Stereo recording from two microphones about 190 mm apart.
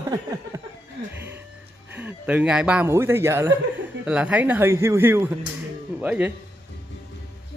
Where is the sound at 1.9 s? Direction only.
10° right (ahead or behind).